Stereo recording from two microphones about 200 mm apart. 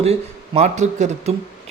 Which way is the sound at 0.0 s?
30° right (ahead or behind).